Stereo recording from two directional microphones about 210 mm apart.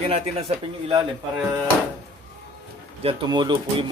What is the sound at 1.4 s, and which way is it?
Speech, 10° right (ahead or behind).